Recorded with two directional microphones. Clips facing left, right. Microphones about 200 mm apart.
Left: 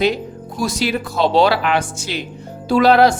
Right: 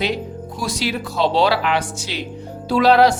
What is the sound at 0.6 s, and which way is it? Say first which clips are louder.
Speech: left 4 dB; 45° left (ahead or behind).